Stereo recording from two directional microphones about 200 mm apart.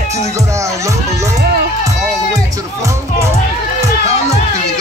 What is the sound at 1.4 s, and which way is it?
Music, 55° right (ahead or behind).